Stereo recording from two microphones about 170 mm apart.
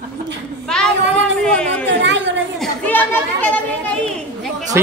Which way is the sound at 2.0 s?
90° right.